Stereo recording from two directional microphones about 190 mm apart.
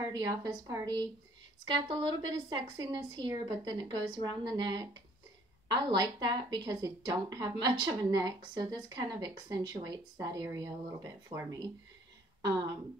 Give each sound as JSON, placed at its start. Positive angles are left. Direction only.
{"t": 0.0, "sound": "a woman's voice", "side_deg": -20}